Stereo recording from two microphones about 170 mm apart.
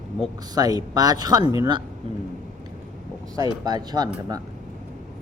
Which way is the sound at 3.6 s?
25° right (ahead or behind).